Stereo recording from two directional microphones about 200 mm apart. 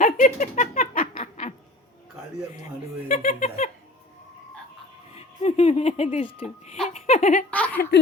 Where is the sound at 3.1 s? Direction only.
35° left (ahead or behind).